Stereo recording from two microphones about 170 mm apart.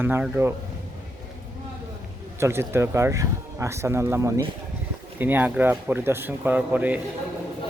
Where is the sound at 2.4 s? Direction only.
15° right (ahead or behind).